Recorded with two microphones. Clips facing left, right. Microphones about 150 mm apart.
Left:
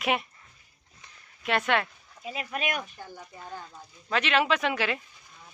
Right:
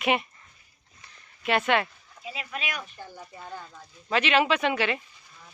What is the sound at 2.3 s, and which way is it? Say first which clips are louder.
Speech: left 3 dB; 50° left (ahead or behind).